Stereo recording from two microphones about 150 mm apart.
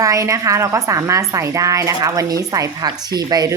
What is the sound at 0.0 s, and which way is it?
A woman's voice, 20° right (ahead or behind).